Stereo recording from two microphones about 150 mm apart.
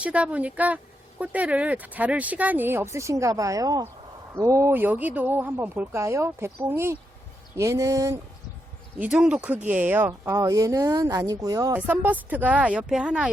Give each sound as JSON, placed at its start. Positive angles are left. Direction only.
{"t": 0.0, "sound": "speech", "side_deg": -10}
{"t": 9.0, "sound": "speech", "side_deg": -5}
{"t": 10.1, "sound": "speech", "side_deg": -20}
{"t": 11.9, "sound": "speech", "side_deg": -10}